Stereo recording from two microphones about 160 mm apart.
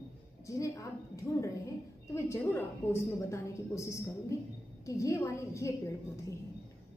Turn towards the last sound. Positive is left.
turn(degrees=20)  # may be behind; listen again after turning